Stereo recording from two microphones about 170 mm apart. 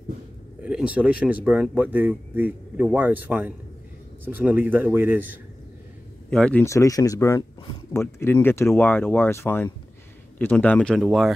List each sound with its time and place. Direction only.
0.6 s speech: 5° right (ahead or behind)
6.3 s speech: 10° left (ahead or behind)